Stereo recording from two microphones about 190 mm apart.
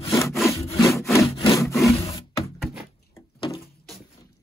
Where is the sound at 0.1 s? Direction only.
15° left (ahead or behind).